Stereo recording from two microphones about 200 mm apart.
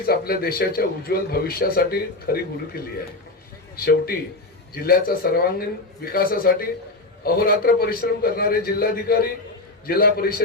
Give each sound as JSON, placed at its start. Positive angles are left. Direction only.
{"t": 0.0, "sound": "a man's voice", "side_deg": 50}